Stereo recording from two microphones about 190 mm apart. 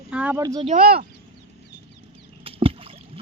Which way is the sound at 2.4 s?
30° right (ahead or behind).